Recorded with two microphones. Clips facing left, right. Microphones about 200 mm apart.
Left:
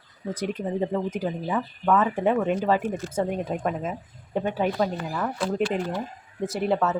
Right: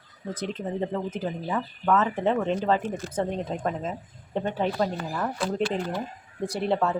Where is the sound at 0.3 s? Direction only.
10° left (ahead or behind).